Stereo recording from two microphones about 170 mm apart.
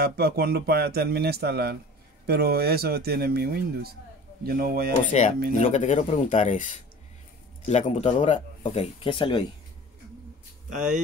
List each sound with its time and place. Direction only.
0.0 s speech: 65° right (ahead or behind)
5.1 s speech: 40° left (ahead or behind)